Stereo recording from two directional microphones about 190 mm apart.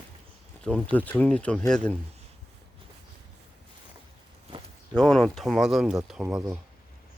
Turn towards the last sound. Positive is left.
turn(degrees=0)  # may be behind; listen again after turning